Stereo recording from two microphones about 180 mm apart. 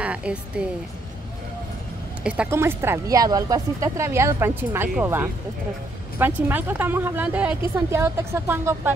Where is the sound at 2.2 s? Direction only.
5° right (ahead or behind).